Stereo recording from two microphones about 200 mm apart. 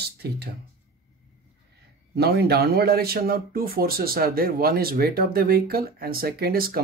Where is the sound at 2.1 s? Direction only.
55° right (ahead or behind).